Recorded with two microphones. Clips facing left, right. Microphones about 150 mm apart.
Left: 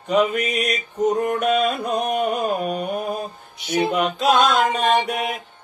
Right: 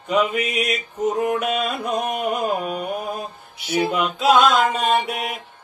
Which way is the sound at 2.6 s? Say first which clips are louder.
Left 2 dB; 35° left (ahead or behind).